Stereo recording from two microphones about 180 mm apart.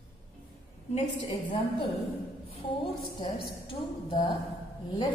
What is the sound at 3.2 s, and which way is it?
A woman's voice, 30° left (ahead or behind).